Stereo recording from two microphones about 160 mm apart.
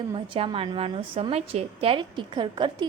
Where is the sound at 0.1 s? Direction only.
30° right (ahead or behind).